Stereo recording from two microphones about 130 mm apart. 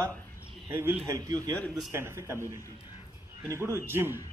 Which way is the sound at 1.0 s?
25° right (ahead or behind).